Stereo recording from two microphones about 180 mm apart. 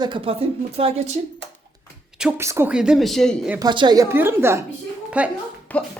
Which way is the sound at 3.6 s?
25° right (ahead or behind).